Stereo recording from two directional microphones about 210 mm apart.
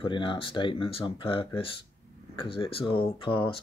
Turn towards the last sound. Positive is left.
turn(degrees=25)  # may be behind; listen again after turning